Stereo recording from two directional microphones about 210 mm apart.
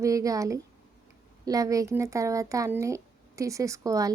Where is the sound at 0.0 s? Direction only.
15° right (ahead or behind).